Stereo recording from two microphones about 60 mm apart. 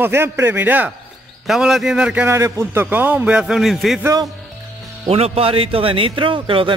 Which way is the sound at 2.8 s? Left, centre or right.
Right.